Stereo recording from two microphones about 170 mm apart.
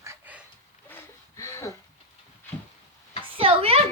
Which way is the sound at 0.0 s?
10° right (ahead or behind).